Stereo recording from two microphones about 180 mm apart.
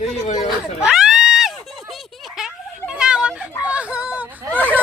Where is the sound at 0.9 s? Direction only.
Centre (ahead or behind).